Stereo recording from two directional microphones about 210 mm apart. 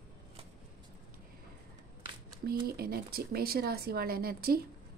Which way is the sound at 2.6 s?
45° right (ahead or behind).